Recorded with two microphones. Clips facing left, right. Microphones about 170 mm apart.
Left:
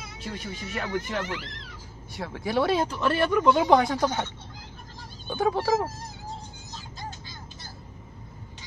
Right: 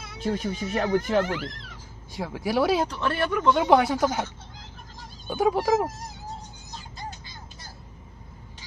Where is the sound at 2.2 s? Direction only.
5° right (ahead or behind).